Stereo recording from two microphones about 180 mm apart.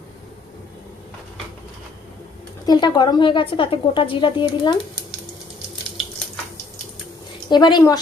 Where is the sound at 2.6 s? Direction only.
25° left (ahead or behind).